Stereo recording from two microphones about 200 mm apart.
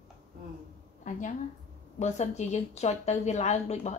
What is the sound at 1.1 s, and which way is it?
A woman's voice, 40° left (ahead or behind).